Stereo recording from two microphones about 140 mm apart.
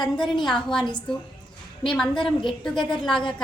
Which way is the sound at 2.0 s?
5° left (ahead or behind).